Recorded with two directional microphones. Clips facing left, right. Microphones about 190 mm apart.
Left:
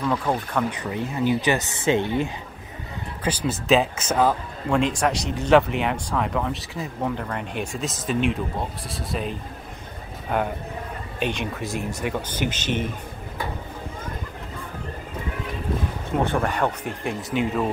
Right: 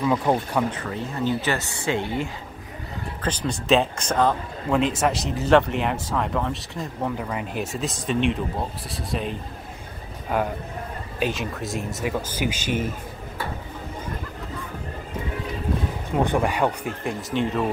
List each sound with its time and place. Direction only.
0.0 s speech: 15° right (ahead or behind)
0.7 s a man's voice: 15° left (ahead or behind); by 12.9 s 10° right (ahead or behind)
16.3 s speech: 10° right (ahead or behind)
17.0 s a man's voice: centre (ahead or behind)